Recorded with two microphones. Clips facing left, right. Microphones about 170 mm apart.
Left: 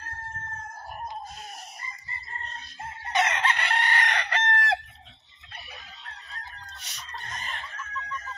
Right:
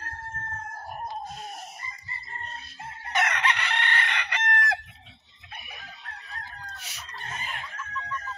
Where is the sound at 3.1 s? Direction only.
20° left (ahead or behind).